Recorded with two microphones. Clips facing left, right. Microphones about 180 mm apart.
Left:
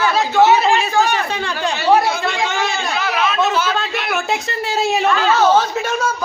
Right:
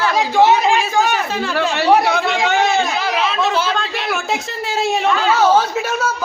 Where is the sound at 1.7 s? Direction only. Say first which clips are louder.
Even; 65° right (ahead or behind).